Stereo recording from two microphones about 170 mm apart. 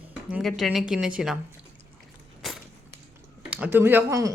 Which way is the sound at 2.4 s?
Centre (ahead or behind).